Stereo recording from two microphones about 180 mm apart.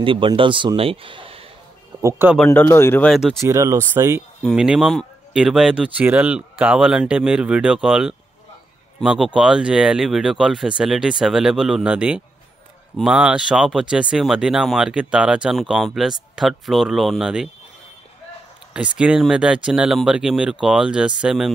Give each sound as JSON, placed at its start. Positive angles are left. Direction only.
{"t": 0.0, "sound": "a man's voice", "side_deg": -30}
{"t": 2.0, "sound": "speech", "side_deg": -15}
{"t": 2.3, "sound": "speech", "side_deg": 10}
{"t": 3.1, "sound": "speech", "side_deg": -5}
{"t": 3.3, "sound": "speech", "side_deg": -15}
{"t": 4.4, "sound": "speech", "side_deg": -5}
{"t": 18.7, "sound": "speech", "side_deg": -5}